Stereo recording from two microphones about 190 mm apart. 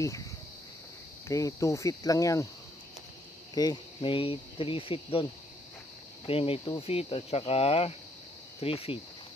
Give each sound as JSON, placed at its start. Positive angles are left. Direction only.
{"t": 1.3, "sound": "cricket", "side_deg": 15}
{"t": 3.5, "sound": "speech", "side_deg": 20}
{"t": 6.2, "sound": "speech", "side_deg": 30}